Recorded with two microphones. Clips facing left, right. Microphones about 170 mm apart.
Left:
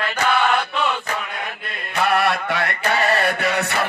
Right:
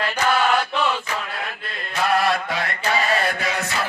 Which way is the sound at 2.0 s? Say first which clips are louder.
Even; 65° left (ahead or behind).